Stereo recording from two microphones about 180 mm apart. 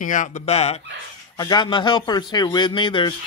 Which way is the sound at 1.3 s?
25° left (ahead or behind).